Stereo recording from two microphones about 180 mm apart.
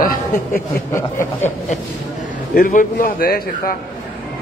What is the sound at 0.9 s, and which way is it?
Speech, 15° left (ahead or behind).